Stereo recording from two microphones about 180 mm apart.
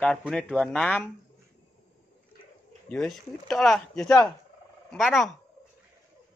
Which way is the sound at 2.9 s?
5° left (ahead or behind).